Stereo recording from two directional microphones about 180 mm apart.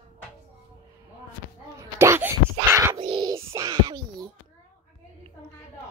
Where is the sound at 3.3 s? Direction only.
20° right (ahead or behind).